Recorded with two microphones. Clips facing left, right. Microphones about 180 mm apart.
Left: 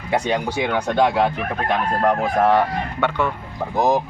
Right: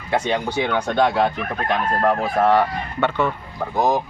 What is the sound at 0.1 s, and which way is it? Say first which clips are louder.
A man's voice: even; 10° left (ahead or behind).